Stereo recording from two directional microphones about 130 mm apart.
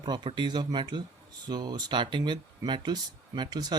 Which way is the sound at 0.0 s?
35° right (ahead or behind).